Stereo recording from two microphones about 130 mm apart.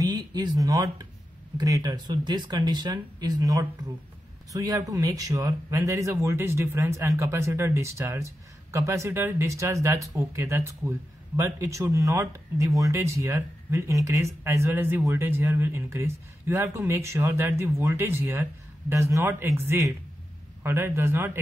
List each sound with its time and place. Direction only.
0.0 s speech: 30° right (ahead or behind)